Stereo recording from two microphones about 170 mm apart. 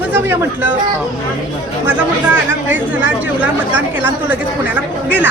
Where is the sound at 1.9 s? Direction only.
10° right (ahead or behind).